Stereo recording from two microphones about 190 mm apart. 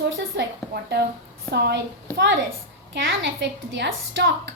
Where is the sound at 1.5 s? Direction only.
60° right (ahead or behind).